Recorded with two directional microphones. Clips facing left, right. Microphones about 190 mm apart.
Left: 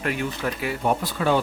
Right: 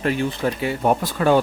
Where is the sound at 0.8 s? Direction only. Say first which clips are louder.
Right 4 dB; 45° right (ahead or behind).